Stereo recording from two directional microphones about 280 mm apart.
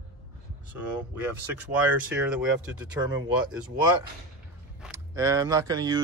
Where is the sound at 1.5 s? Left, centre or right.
Centre.